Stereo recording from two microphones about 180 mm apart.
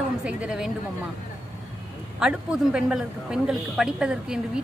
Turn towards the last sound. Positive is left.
turn(degrees=-5)  # may be behind; listen again after turning